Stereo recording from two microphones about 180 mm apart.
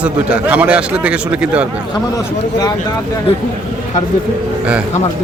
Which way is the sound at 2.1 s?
20° left (ahead or behind).